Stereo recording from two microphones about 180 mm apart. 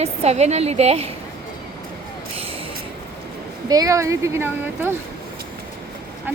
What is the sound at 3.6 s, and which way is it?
Speech, 20° right (ahead or behind).